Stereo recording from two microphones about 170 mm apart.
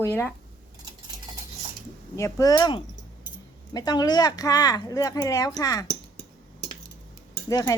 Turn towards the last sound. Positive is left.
turn(degrees=20)  # may be behind; listen again after turning